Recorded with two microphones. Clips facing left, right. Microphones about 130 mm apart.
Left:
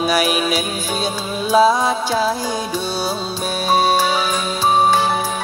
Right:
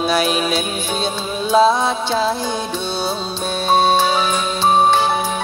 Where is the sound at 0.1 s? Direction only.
10° left (ahead or behind).